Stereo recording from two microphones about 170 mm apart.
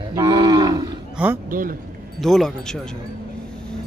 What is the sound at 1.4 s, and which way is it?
Speech, 55° right (ahead or behind).